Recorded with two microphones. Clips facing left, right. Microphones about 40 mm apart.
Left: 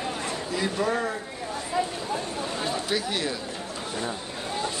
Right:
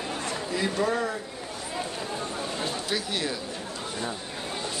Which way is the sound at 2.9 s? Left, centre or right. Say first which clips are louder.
Left 1 dB; centre.